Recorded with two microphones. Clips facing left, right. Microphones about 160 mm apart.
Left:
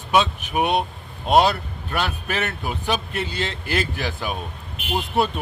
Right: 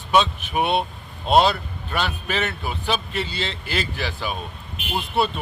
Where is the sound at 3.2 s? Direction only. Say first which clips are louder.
Left 2 dB; 50° left (ahead or behind).